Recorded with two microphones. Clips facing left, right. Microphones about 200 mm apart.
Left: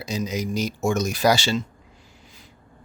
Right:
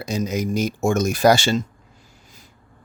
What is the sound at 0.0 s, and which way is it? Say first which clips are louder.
Speech: right 3 dB; 50° right (ahead or behind).